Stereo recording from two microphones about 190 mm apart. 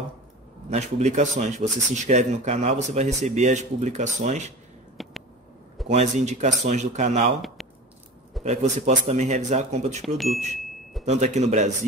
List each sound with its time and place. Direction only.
0.7 s speech: 35° right (ahead or behind)
5.0 s a sound: centre (ahead or behind)
5.9 s speech: 35° right (ahead or behind)
7.6 s a sound: centre (ahead or behind)
8.5 s speech: 35° right (ahead or behind)
10.0 s speech: centre (ahead or behind)
11.1 s speech: 35° right (ahead or behind)